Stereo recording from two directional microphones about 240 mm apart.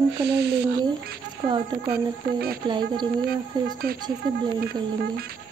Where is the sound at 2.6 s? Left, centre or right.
Centre.